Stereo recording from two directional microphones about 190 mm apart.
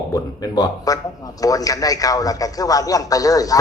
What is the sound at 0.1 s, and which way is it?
A man's voice, 20° left (ahead or behind).